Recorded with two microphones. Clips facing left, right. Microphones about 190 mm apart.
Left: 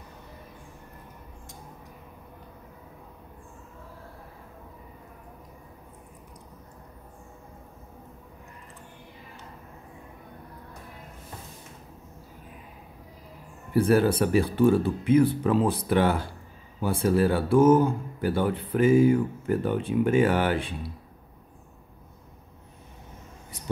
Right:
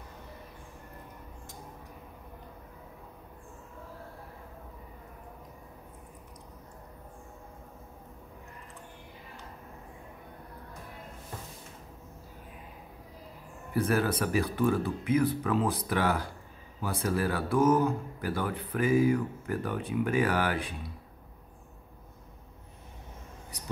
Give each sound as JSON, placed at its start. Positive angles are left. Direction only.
{"t": 13.7, "sound": "speech", "side_deg": 30}